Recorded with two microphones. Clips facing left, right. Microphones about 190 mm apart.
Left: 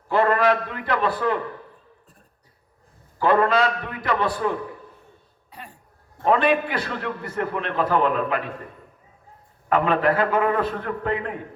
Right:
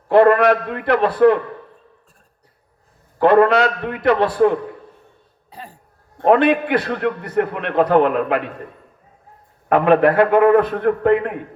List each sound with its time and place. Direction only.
0.1 s a man's voice: 65° right (ahead or behind)
3.2 s a man's voice: 65° right (ahead or behind)
5.5 s throat clearing: 35° right (ahead or behind)
6.1 s a man's voice: 65° right (ahead or behind)
9.6 s a man's voice: 60° right (ahead or behind)